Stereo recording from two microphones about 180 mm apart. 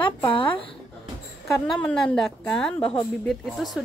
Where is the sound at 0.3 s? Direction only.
30° left (ahead or behind).